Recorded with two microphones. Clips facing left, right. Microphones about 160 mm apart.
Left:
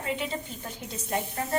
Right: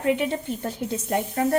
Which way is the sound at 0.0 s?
65° right (ahead or behind).